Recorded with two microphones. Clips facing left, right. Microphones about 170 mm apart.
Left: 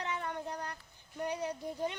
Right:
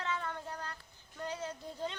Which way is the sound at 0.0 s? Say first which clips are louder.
Left 1 dB; 15° left (ahead or behind).